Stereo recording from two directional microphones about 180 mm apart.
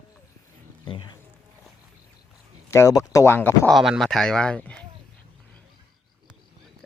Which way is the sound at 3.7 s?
Centre (ahead or behind).